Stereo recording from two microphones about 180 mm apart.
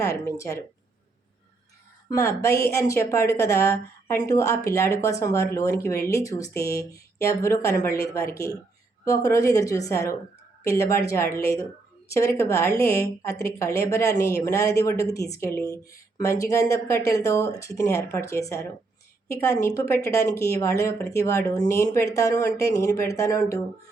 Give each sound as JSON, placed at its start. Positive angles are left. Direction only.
{"t": 0.1, "sound": "a woman's voice", "side_deg": 15}
{"t": 2.0, "sound": "a woman's voice", "side_deg": 15}